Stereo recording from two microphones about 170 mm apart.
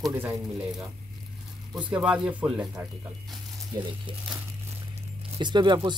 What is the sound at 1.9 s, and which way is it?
Speech, 5° right (ahead or behind).